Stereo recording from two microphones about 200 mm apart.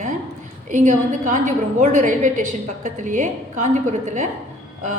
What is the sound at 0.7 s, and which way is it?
A woman's voice, 40° right (ahead or behind).